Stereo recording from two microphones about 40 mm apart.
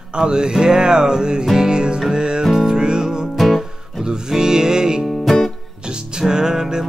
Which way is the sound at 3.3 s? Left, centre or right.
Centre.